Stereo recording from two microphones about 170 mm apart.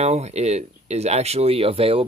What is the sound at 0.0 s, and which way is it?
Speech, 40° right (ahead or behind).